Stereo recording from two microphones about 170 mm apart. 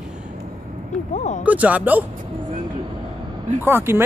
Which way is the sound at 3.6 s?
15° right (ahead or behind).